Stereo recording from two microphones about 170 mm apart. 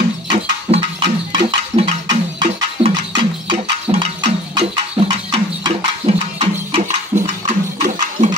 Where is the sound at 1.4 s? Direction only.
40° right (ahead or behind).